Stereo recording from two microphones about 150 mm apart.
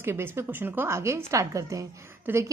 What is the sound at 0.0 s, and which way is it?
A woman's voice, 15° right (ahead or behind).